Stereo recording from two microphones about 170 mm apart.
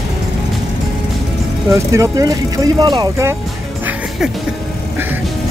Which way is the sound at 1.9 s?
20° right (ahead or behind).